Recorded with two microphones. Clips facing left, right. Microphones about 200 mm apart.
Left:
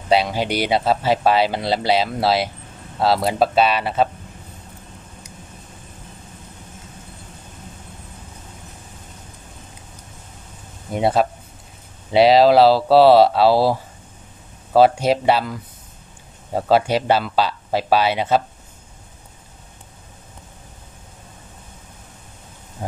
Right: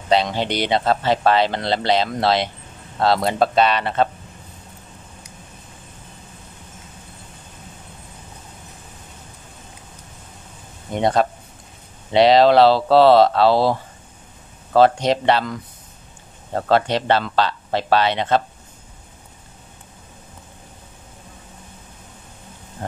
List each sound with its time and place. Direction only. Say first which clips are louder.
0.1 s speech: left 1 dB; 10° left (ahead or behind)
10.9 s speech: even; 5° left (ahead or behind)